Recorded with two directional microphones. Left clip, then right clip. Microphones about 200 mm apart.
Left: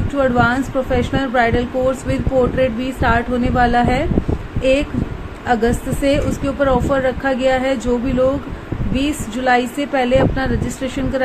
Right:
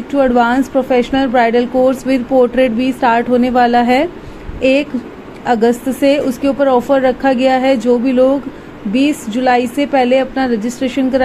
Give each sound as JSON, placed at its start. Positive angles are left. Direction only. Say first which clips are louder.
{"t": 0.1, "sound": "a woman's voice", "louder": "right 4 dB", "side_deg": -15}